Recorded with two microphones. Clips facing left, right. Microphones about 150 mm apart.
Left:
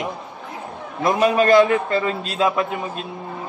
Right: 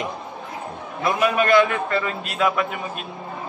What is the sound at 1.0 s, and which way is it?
A man's voice, 35° left (ahead or behind).